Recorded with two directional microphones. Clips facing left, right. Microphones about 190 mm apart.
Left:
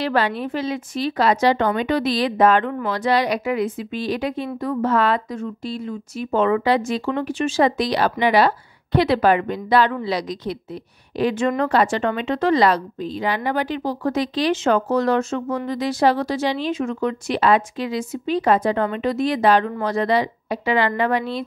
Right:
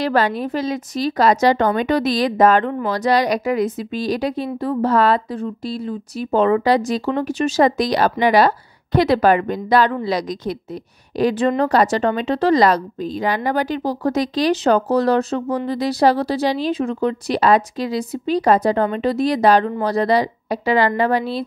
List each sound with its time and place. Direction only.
0.0 s a woman's voice: 40° right (ahead or behind)